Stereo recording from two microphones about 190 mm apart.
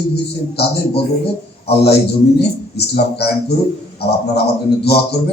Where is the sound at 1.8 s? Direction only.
60° left (ahead or behind).